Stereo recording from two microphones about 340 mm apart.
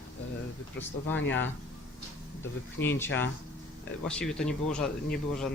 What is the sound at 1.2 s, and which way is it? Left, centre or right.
Speech, left.